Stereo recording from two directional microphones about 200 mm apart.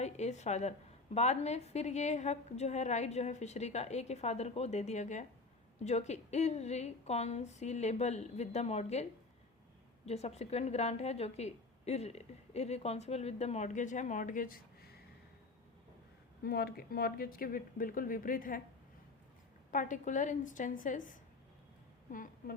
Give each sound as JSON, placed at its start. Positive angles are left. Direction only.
{"t": 0.0, "sound": "a woman's voice", "side_deg": 35}
{"t": 10.1, "sound": "a woman's voice", "side_deg": 35}
{"t": 16.4, "sound": "speech", "side_deg": 50}
{"t": 19.7, "sound": "a woman's voice", "side_deg": 40}